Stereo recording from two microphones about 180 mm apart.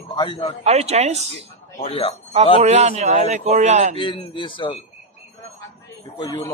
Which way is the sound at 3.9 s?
25° left (ahead or behind).